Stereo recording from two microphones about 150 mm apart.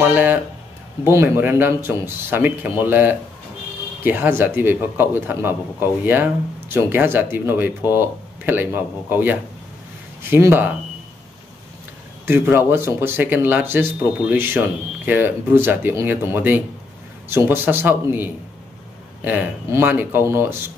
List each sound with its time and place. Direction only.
0.1 s speech: 10° right (ahead or behind)
12.3 s speech: 15° right (ahead or behind)